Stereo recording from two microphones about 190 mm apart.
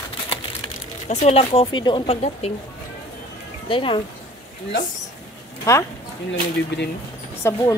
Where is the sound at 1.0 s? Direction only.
35° left (ahead or behind).